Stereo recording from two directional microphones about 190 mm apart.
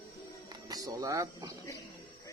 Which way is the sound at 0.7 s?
20° right (ahead or behind).